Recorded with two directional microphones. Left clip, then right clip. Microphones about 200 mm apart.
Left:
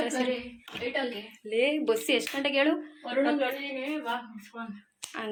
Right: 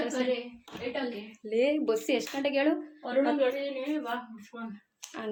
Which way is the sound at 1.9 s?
5° right (ahead or behind).